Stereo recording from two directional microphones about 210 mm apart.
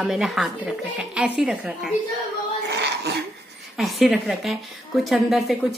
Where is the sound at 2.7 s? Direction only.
55° right (ahead or behind).